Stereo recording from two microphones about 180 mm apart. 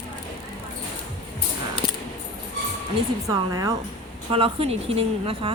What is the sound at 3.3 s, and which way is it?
Speech, 20° right (ahead or behind).